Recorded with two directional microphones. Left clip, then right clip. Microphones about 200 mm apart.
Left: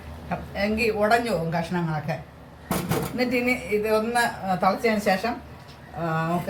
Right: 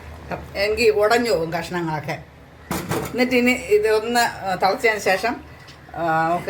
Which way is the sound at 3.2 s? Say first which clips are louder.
Right 6 dB; 55° right (ahead or behind).